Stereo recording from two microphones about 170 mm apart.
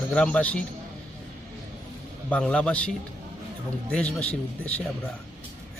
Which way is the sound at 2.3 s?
5° left (ahead or behind).